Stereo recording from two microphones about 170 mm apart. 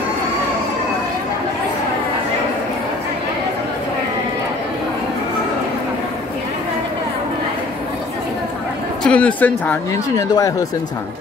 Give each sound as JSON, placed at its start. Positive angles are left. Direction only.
{"t": 9.0, "sound": "speech", "side_deg": 5}
{"t": 10.1, "sound": "speech", "side_deg": 20}